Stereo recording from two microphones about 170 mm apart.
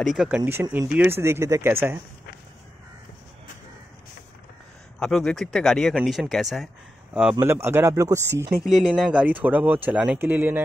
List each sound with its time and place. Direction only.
0.0 s speech: centre (ahead or behind)
0.4 s speech: 15° right (ahead or behind)
4.9 s speech: 5° left (ahead or behind)
7.3 s speech: 15° right (ahead or behind)
8.6 s speech: centre (ahead or behind)